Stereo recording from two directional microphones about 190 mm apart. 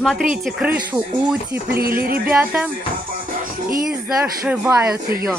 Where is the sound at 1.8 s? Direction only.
50° right (ahead or behind).